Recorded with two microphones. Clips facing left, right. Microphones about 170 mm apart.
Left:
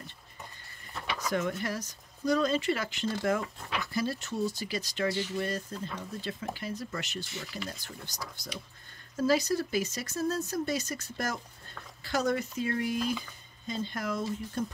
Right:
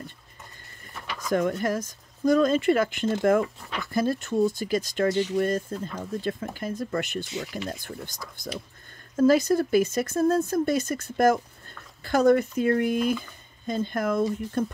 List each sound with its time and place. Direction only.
1.3 s speech: 50° right (ahead or behind)